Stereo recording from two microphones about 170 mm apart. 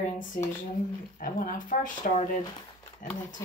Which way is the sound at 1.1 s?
55° left (ahead or behind).